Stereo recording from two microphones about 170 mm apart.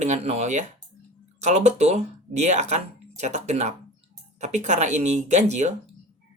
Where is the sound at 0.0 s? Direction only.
40° right (ahead or behind).